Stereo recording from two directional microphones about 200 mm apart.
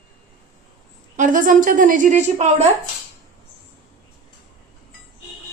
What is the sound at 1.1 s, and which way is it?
A woman's voice, 40° right (ahead or behind).